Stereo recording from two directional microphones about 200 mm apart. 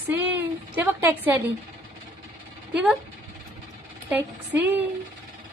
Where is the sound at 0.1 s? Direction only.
10° right (ahead or behind).